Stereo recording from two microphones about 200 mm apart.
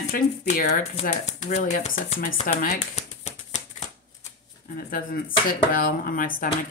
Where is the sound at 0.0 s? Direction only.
40° left (ahead or behind).